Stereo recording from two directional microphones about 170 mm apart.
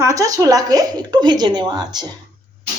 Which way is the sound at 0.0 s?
20° right (ahead or behind).